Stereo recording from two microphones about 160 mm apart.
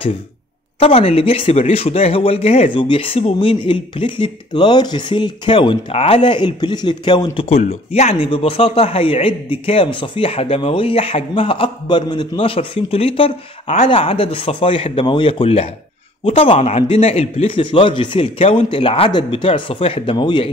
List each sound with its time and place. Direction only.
0.7 s speech: 40° left (ahead or behind)